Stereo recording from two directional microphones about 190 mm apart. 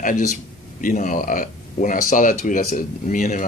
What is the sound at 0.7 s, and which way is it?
Speech, 45° left (ahead or behind).